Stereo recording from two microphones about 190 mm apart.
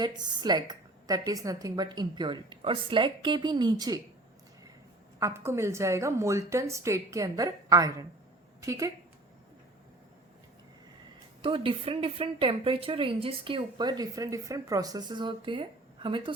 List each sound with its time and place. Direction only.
0.0 s a woman's voice: 20° right (ahead or behind)
5.2 s a woman's voice: 15° right (ahead or behind)
11.4 s a woman's voice: 30° right (ahead or behind)